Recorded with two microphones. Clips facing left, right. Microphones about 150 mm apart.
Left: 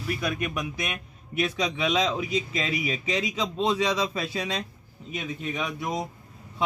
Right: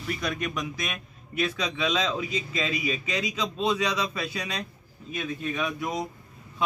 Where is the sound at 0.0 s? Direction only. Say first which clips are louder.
Left 1 dB; 5° left (ahead or behind).